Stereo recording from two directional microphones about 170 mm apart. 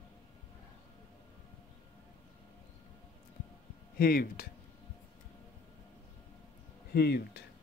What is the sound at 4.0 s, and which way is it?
Speech, 60° left (ahead or behind).